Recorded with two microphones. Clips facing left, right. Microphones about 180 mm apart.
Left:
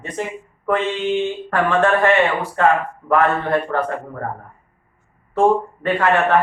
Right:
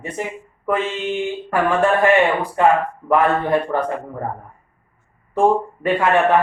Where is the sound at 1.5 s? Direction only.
10° right (ahead or behind).